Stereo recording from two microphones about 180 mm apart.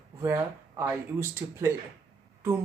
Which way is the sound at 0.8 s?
15° right (ahead or behind).